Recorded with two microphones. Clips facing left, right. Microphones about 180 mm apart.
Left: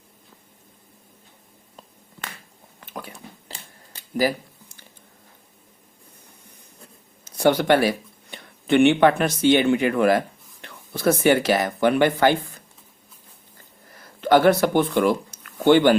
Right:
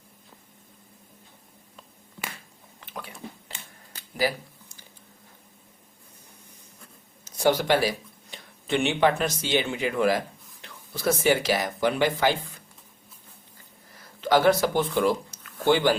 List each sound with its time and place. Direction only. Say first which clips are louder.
2.8 s a sound: left 2 dB; 40° left (ahead or behind)
7.3 s speech: left 4 dB; 60° left (ahead or behind)
14.2 s speech: left 4 dB; 60° left (ahead or behind)